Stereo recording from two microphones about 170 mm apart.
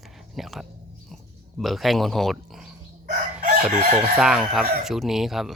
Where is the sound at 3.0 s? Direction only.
55° right (ahead or behind).